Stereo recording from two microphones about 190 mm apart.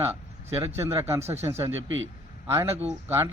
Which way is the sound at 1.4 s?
15° right (ahead or behind).